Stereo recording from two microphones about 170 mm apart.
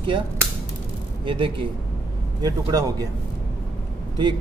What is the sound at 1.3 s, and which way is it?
Speech, 30° right (ahead or behind).